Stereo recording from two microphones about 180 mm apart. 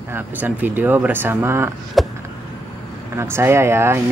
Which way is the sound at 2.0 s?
Centre (ahead or behind).